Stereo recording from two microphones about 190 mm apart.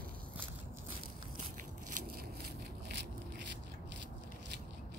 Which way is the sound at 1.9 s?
55° right (ahead or behind).